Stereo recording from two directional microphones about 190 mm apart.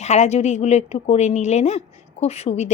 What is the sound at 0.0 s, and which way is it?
A woman's voice, 35° left (ahead or behind).